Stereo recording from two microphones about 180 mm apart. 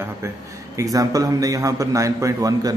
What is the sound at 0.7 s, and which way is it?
A man's voice, 20° right (ahead or behind).